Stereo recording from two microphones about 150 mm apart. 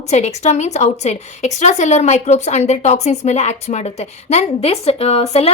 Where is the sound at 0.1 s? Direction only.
50° left (ahead or behind).